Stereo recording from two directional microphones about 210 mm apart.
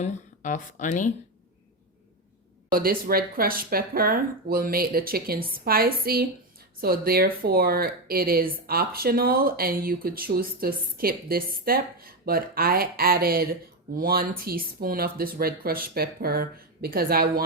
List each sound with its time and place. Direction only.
0.0 s speech: 35° left (ahead or behind)
2.7 s speech: 45° right (ahead or behind)